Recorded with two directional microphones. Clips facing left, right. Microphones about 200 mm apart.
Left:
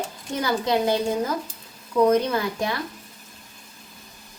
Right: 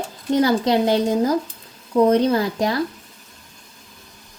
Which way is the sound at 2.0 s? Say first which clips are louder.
Right 4 dB; 30° right (ahead or behind).